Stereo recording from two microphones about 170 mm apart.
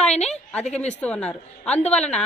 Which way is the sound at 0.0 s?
40° left (ahead or behind).